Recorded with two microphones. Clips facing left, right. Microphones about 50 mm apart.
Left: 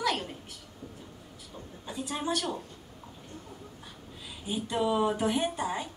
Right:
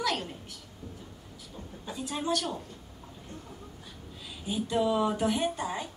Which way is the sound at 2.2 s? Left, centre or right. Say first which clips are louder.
Right 1 dB; centre.